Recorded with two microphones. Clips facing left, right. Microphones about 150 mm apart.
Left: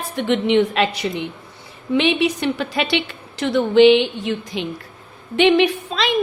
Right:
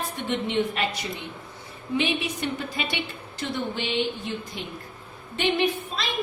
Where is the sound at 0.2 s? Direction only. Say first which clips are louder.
Left 10 dB; 90° left.